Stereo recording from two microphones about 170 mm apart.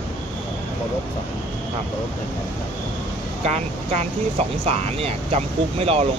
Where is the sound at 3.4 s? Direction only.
40° right (ahead or behind).